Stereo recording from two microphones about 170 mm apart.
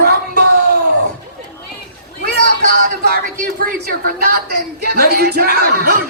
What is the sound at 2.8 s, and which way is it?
A woman's voice, 60° right (ahead or behind).